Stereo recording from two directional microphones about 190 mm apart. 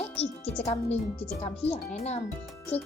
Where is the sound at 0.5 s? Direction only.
35° left (ahead or behind).